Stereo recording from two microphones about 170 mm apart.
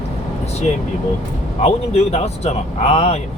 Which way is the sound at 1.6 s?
40° left (ahead or behind).